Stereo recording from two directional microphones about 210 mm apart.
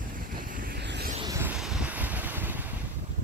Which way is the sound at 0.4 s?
40° right (ahead or behind).